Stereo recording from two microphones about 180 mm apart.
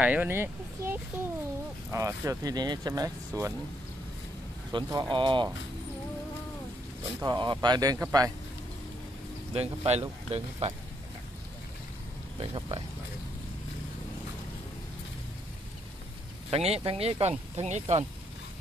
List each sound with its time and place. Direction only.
0.0 s speech: 10° right (ahead or behind)
4.7 s speech: 25° right (ahead or behind)
7.2 s speech: 25° right (ahead or behind)
9.5 s speech: 35° right (ahead or behind)
12.4 s speech: 25° right (ahead or behind)
16.4 s speech: 35° right (ahead or behind)